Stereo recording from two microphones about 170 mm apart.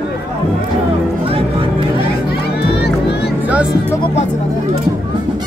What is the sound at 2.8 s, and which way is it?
Music, 75° left (ahead or behind).